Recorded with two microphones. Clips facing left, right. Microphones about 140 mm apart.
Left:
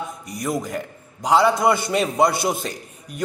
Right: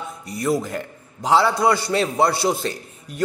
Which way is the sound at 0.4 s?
5° right (ahead or behind).